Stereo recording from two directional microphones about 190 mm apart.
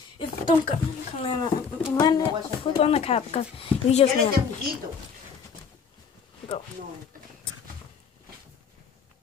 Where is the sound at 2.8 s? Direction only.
30° left (ahead or behind).